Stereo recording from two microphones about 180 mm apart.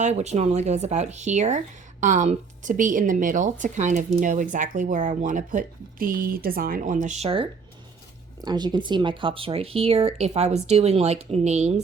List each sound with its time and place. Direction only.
0.0 s speech: 40° right (ahead or behind)
8.4 s speech: 25° right (ahead or behind)